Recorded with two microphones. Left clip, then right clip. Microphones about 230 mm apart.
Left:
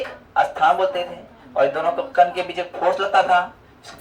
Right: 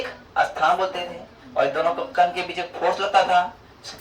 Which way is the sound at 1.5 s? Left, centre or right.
Centre.